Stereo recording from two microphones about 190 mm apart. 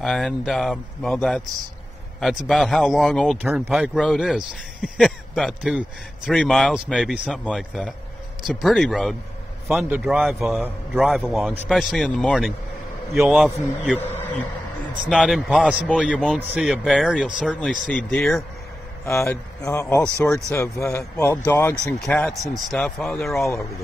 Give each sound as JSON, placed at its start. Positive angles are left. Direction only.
{"t": 0.0, "sound": "speech", "side_deg": 5}
{"t": 13.9, "sound": "a sound", "side_deg": 10}
{"t": 15.0, "sound": "speech", "side_deg": 0}
{"t": 15.9, "sound": "a man's voice", "side_deg": 5}
{"t": 16.3, "sound": "speech", "side_deg": -5}
{"t": 19.0, "sound": "a man's voice", "side_deg": 15}
{"t": 22.0, "sound": "speech", "side_deg": 0}
{"t": 23.4, "sound": "a man's voice", "side_deg": 15}